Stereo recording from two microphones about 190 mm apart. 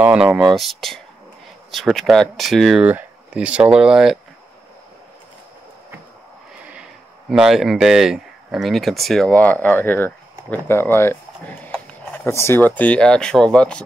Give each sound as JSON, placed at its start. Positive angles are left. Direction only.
{"t": 0.0, "sound": "speech", "side_deg": -5}
{"t": 6.7, "sound": "speech", "side_deg": -5}